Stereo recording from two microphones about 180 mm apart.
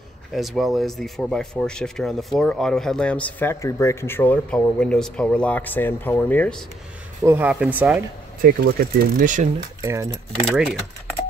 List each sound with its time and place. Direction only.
0.3 s speech: centre (ahead or behind)
7.2 s speech: 10° right (ahead or behind)
8.4 s speech: 55° right (ahead or behind)
9.8 s speech: 15° right (ahead or behind)
10.5 s speech: 5° right (ahead or behind)